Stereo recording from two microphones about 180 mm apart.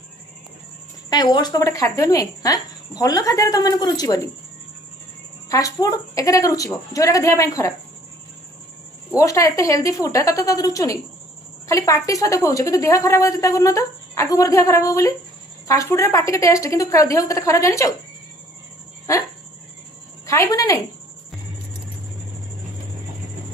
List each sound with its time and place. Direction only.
1.1 s speech: 25° left (ahead or behind)
5.5 s speech: 20° left (ahead or behind)
9.1 s a woman's voice: 15° left (ahead or behind)
19.0 s dog: 15° left (ahead or behind)
20.2 s speech: 15° left (ahead or behind)